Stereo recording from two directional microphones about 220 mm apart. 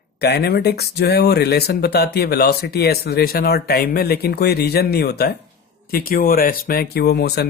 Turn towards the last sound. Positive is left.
turn(degrees=50)  # may be behind; listen again after turning